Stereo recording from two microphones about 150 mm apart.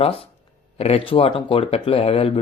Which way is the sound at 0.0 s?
40° left (ahead or behind).